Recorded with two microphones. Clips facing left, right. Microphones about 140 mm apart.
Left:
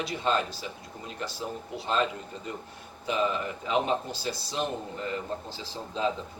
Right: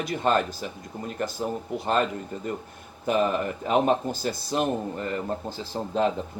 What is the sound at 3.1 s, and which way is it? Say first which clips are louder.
Speech: right 5 dB; 50° right (ahead or behind).